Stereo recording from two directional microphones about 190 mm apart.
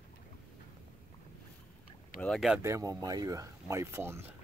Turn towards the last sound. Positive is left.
turn(degrees=-15)  # may be behind; listen again after turning